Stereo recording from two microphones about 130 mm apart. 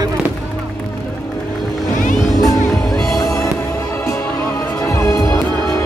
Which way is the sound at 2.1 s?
Centre (ahead or behind).